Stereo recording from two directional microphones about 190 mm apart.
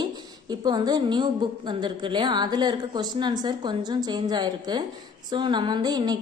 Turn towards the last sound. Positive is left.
turn(degrees=-20)  # may be behind; listen again after turning